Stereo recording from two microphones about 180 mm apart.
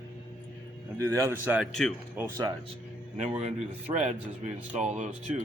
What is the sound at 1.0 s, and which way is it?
A man's voice, 15° right (ahead or behind).